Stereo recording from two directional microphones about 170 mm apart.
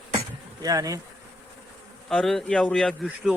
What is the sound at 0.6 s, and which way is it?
Bee, 20° right (ahead or behind).